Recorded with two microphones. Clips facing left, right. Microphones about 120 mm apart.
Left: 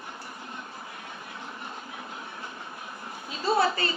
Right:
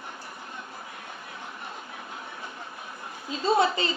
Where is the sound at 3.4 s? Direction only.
20° right (ahead or behind).